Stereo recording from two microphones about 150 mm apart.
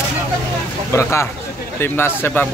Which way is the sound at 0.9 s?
20° left (ahead or behind).